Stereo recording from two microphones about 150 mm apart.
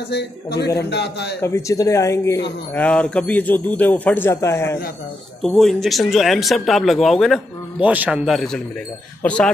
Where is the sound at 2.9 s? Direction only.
10° left (ahead or behind).